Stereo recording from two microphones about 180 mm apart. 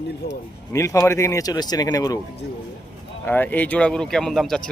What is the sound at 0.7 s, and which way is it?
Speech, 15° left (ahead or behind).